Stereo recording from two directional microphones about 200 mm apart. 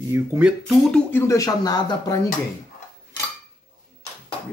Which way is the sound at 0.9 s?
5° left (ahead or behind).